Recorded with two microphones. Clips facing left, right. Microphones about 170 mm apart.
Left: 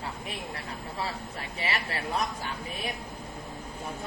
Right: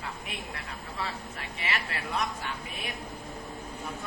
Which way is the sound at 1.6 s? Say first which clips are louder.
Left 2 dB; 35° left (ahead or behind).